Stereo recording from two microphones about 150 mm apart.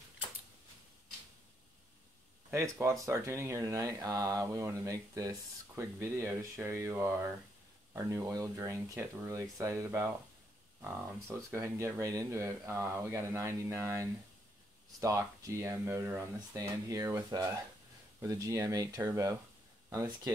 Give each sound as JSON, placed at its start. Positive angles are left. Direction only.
{"t": 2.5, "sound": "speech", "side_deg": -20}